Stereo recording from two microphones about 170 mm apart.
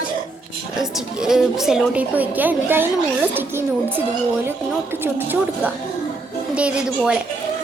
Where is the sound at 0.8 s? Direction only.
5° right (ahead or behind).